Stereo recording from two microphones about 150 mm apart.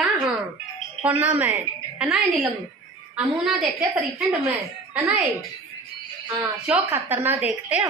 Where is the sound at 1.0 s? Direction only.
10° right (ahead or behind).